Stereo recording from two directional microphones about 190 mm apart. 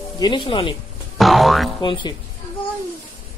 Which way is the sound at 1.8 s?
25° left (ahead or behind).